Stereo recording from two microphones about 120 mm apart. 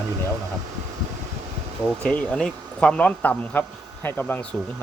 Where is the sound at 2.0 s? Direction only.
10° left (ahead or behind).